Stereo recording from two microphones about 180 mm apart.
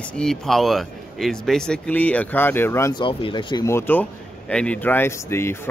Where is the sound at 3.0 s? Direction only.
30° left (ahead or behind).